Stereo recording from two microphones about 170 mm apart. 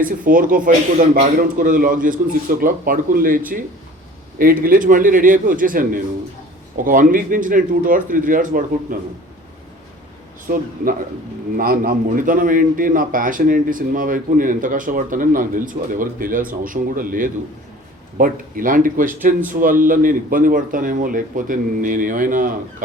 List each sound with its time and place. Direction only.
0.0 s a man's voice: 55° right (ahead or behind)
11.5 s a man's voice: 55° right (ahead or behind)